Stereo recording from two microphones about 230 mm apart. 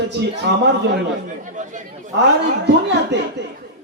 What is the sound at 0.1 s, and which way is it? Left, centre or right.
Speech, right.